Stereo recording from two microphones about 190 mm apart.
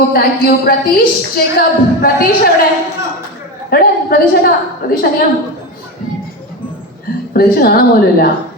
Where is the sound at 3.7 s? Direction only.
55° left (ahead or behind).